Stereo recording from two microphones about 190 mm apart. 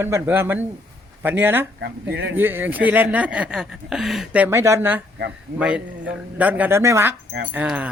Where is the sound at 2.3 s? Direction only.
10° right (ahead or behind).